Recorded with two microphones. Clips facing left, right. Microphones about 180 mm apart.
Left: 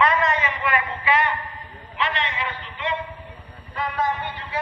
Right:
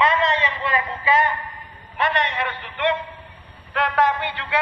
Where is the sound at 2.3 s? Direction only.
65° right (ahead or behind).